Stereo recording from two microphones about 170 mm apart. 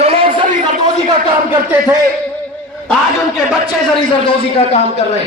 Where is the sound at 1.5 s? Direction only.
10° right (ahead or behind).